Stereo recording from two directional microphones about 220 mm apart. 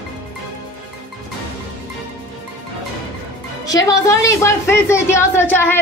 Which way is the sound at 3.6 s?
15° left (ahead or behind).